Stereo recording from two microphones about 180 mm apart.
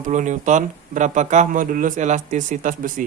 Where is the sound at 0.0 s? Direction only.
45° right (ahead or behind).